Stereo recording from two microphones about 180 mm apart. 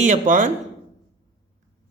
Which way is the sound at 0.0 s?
45° right (ahead or behind).